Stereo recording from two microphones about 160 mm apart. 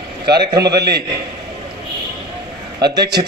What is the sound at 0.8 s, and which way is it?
Speech, 90° right.